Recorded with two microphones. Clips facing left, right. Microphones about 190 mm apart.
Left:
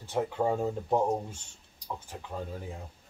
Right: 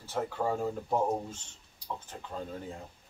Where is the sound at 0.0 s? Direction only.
20° left (ahead or behind).